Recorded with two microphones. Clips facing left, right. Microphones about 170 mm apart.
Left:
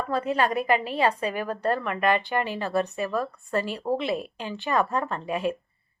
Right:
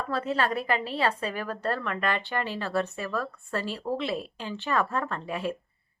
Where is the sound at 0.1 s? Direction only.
15° left (ahead or behind).